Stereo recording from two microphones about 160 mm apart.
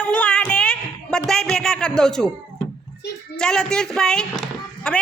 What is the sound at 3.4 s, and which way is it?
Speech, 5° left (ahead or behind).